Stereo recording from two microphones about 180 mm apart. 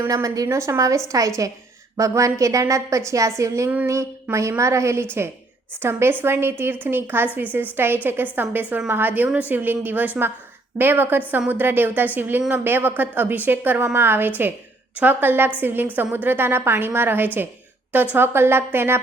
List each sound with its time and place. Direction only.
0.0 s a woman's voice: 20° right (ahead or behind)